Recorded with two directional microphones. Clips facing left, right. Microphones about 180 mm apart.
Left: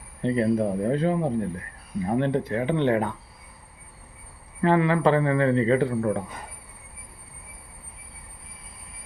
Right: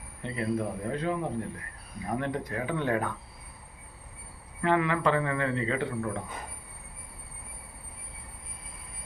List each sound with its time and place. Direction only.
0.2 s a man's voice: 35° left (ahead or behind)
4.6 s a man's voice: 35° left (ahead or behind)